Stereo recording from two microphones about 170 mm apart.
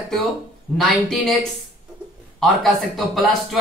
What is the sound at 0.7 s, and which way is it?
Speech, centre (ahead or behind).